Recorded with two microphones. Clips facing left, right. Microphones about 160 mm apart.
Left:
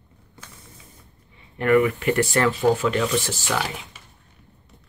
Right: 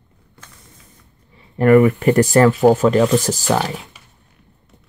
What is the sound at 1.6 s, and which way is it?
Speech, 40° right (ahead or behind).